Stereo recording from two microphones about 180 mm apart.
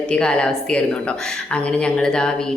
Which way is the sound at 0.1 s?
5° left (ahead or behind).